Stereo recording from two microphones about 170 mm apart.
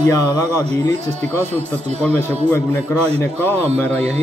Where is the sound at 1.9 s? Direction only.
10° left (ahead or behind).